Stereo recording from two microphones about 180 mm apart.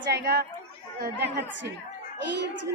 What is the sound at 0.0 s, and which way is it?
Speech, 65° right (ahead or behind).